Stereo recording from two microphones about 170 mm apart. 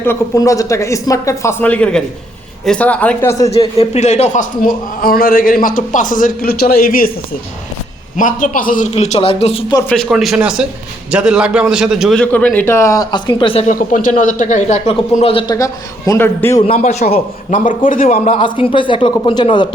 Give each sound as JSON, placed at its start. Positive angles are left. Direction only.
{"t": 0.0, "sound": "a man's voice", "side_deg": 15}
{"t": 3.5, "sound": "a man's voice", "side_deg": 40}
{"t": 8.1, "sound": "speech", "side_deg": 50}
{"t": 8.9, "sound": "speech", "side_deg": 35}
{"t": 9.9, "sound": "a man's voice", "side_deg": 0}
{"t": 13.7, "sound": "speech", "side_deg": 50}
{"t": 15.5, "sound": "a man's voice", "side_deg": 20}
{"t": 16.7, "sound": "speech", "side_deg": 45}
{"t": 18.1, "sound": "speech", "side_deg": 35}